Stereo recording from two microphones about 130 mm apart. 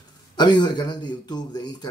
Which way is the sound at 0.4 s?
35° left (ahead or behind).